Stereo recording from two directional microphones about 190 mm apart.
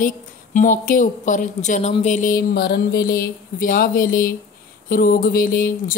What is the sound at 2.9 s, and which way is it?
A woman's voice, 50° left (ahead or behind).